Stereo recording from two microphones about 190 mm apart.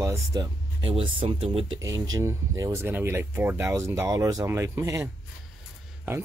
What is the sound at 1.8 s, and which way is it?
Speech, 20° right (ahead or behind).